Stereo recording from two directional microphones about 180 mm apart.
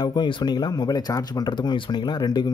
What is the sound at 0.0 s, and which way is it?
Speech, 25° left (ahead or behind).